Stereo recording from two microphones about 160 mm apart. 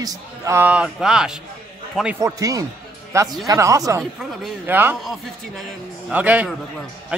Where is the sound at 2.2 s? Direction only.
20° right (ahead or behind).